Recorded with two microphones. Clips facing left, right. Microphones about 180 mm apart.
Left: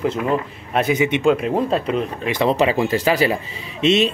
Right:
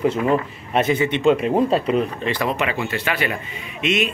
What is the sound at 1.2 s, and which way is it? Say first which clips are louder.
Speech: right 3 dB; centre (ahead or behind).